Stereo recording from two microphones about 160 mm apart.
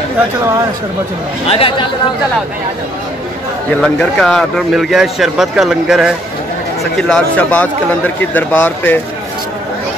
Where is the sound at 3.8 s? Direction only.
5° left (ahead or behind).